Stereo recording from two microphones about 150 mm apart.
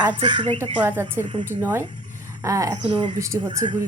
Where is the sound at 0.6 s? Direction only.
15° right (ahead or behind).